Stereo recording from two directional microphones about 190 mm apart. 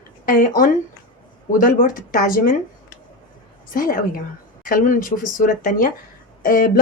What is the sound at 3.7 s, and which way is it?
Speech, 45° left (ahead or behind).